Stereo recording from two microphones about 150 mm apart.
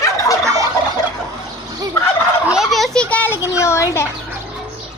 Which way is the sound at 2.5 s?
Centre (ahead or behind).